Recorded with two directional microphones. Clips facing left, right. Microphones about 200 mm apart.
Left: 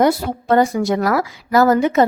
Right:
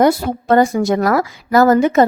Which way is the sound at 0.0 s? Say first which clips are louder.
Right 2 dB; 45° right (ahead or behind).